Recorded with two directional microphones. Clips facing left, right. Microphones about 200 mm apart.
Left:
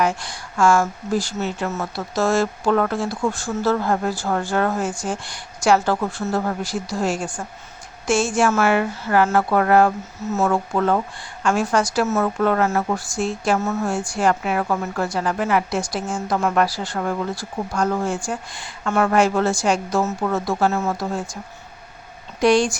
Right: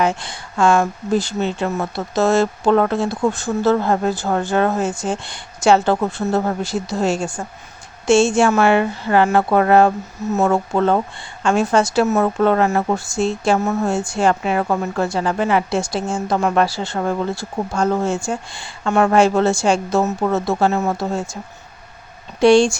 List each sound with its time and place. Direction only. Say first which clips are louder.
0.0 s a woman's voice: right 2 dB; 25° right (ahead or behind)
22.4 s a woman's voice: right 5 dB; 30° right (ahead or behind)